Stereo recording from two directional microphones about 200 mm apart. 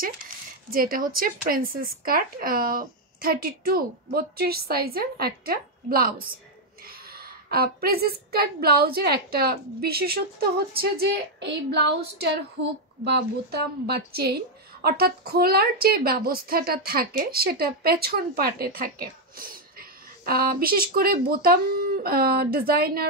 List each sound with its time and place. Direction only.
0.7 s a woman's voice: 45° right (ahead or behind)